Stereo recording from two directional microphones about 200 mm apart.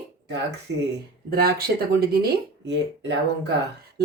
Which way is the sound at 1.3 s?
50° right (ahead or behind).